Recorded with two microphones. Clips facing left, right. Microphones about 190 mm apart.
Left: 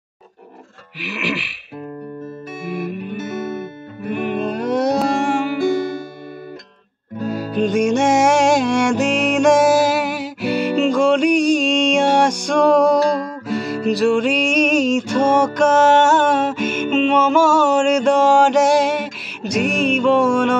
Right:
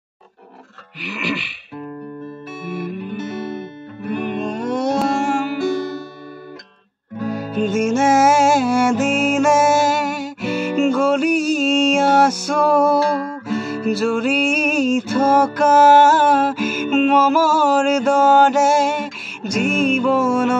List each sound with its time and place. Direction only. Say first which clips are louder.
1.0 s throat clearing: even; 5° left (ahead or behind)
2.7 s music: left 1 dB; centre (ahead or behind)
7.3 s music: left 2 dB; centre (ahead or behind)